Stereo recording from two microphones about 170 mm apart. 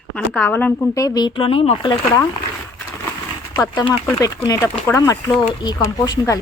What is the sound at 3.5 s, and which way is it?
Speech, 20° left (ahead or behind).